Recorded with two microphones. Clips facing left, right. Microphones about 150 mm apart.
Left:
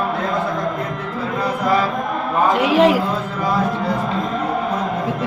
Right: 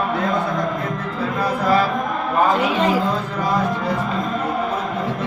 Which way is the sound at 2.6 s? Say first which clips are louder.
Left 5 dB; 90° left.